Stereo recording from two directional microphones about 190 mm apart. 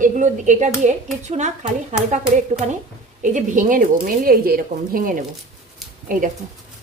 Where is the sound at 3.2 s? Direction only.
40° right (ahead or behind).